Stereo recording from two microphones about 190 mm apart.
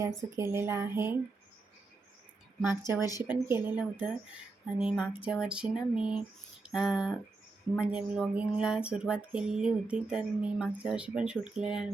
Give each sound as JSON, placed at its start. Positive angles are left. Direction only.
{"t": 0.2, "sound": "speech", "side_deg": -15}
{"t": 3.0, "sound": "speech", "side_deg": 20}
{"t": 3.2, "sound": "speech", "side_deg": -10}
{"t": 4.6, "sound": "a sound", "side_deg": -5}